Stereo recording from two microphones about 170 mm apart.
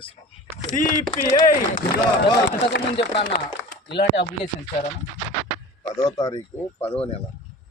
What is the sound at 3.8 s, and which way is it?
Speech, 85° left.